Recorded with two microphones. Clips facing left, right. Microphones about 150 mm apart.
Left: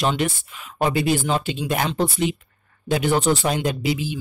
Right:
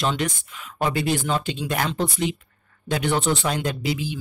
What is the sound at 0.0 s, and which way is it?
Speech, 20° left (ahead or behind).